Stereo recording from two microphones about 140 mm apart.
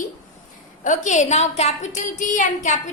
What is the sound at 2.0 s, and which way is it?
Speech, 65° left (ahead or behind).